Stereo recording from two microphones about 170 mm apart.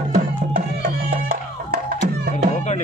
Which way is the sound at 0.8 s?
60° right (ahead or behind).